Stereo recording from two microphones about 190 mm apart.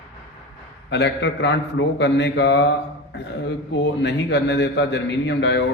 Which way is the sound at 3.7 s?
65° left (ahead or behind).